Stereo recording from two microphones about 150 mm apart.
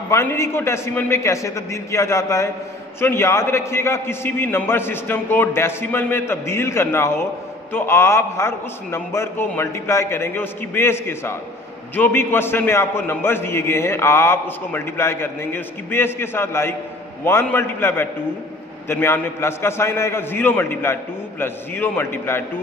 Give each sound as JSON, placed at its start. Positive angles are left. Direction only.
{"t": 0.1, "sound": "a man's voice", "side_deg": 20}